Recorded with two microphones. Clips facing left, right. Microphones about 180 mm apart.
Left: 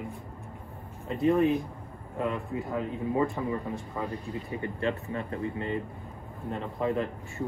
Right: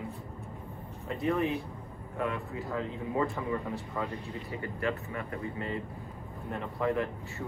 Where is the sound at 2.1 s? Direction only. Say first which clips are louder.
Left 3 dB; 20° left (ahead or behind).